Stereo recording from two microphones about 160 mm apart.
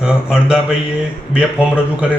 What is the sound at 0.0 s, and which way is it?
A man's voice, 5° right (ahead or behind).